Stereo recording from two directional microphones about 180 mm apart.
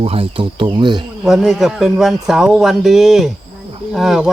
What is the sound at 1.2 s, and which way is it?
A man's voice, centre (ahead or behind).